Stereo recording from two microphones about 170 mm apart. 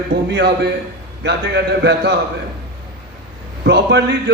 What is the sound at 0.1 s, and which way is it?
A man's voice, 80° right.